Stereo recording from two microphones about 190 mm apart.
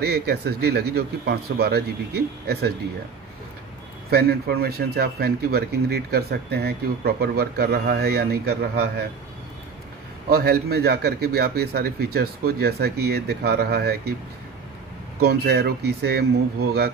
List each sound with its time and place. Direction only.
0.0 s a man's voice: 60° right (ahead or behind)
4.1 s a man's voice: 55° right (ahead or behind)
10.3 s a man's voice: 55° right (ahead or behind)
15.2 s a man's voice: 60° right (ahead or behind)